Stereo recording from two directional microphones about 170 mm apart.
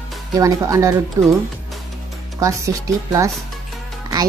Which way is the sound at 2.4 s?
20° right (ahead or behind).